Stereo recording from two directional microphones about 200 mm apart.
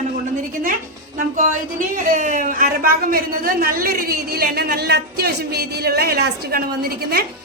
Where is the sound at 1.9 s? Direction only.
40° right (ahead or behind).